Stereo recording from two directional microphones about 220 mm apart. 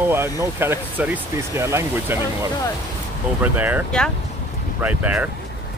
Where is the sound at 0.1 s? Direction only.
10° right (ahead or behind).